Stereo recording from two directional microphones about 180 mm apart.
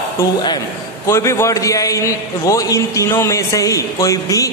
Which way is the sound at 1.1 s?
15° left (ahead or behind).